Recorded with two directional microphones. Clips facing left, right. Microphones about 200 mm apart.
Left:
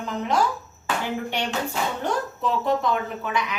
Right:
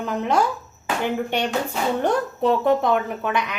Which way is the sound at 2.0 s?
60° right (ahead or behind).